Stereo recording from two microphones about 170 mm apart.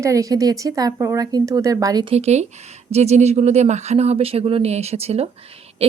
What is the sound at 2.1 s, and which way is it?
Speech, 40° right (ahead or behind).